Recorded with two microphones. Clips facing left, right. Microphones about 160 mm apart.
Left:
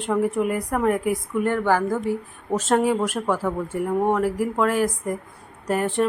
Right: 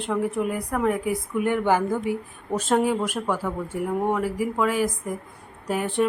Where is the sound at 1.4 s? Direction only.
15° right (ahead or behind).